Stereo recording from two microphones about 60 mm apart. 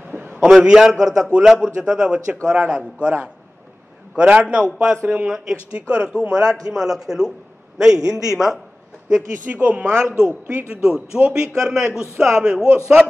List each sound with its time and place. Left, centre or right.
0.1 s a sound: right
0.4 s a man's voice: centre
6.7 s a man's voice: centre
7.9 s a man's voice: right
8.3 s a man's voice: centre
9.5 s a woman's voice: right
10.7 s a man's voice: centre